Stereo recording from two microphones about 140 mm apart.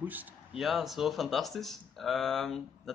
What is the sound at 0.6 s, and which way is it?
Speech, centre (ahead or behind).